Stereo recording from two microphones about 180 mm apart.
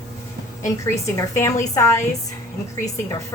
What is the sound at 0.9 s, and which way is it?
A woman's voice, 15° left (ahead or behind).